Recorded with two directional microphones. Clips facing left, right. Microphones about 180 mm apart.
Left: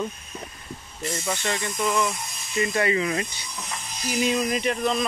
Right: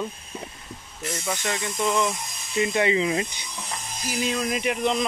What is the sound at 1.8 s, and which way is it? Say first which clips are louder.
Speech: right 1 dB; 20° right (ahead or behind).